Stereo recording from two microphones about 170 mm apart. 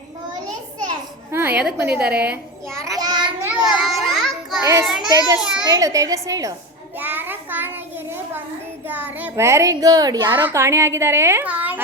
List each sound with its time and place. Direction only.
1.3 s a sound: 10° right (ahead or behind)
1.8 s a child's voice: 10° right (ahead or behind)
2.7 s child singing: 20° right (ahead or behind)
3.5 s children playing: 5° right (ahead or behind)
4.6 s a child's voice: 15° right (ahead or behind)
5.4 s a child's voice: 5° right (ahead or behind)
5.6 s a woman's voice: 20° right (ahead or behind)
7.0 s child singing: 10° right (ahead or behind)
8.9 s a child's voice: 10° right (ahead or behind)